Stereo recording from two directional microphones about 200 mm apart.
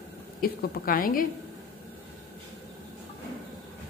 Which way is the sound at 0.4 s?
45° left (ahead or behind).